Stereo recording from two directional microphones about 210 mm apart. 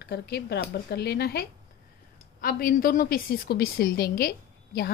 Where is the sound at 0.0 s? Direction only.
50° left (ahead or behind).